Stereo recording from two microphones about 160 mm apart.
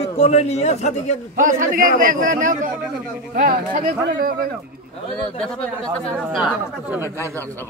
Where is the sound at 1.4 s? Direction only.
55° right (ahead or behind).